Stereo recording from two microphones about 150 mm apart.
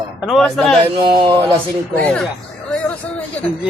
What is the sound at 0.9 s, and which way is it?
Speech, 35° right (ahead or behind).